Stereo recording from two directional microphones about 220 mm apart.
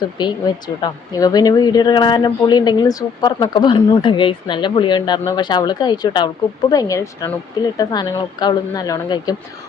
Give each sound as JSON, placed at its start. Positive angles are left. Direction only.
{"t": 0.2, "sound": "speech", "side_deg": 20}